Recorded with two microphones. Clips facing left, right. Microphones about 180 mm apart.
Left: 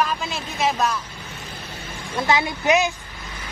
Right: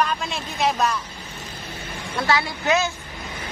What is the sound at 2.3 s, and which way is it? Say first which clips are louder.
Speech: left 2 dB; 20° left (ahead or behind).